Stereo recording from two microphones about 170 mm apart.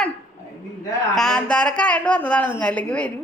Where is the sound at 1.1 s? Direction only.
Centre (ahead or behind).